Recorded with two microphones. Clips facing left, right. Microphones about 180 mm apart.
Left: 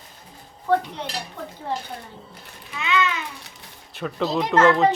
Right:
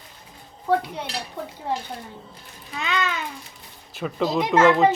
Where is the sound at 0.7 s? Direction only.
10° right (ahead or behind).